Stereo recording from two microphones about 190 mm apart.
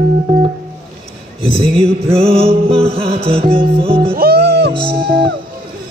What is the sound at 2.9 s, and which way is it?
Music, 30° right (ahead or behind).